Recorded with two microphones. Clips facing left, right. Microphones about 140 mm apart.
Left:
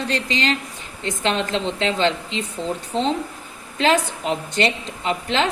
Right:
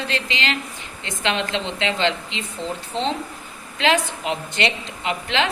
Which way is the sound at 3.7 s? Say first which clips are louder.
Left 1 dB; 40° left (ahead or behind).